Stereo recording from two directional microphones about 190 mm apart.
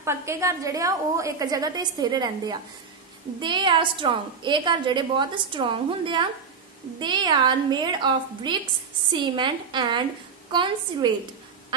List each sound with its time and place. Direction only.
0.0 s a woman's voice: 15° right (ahead or behind)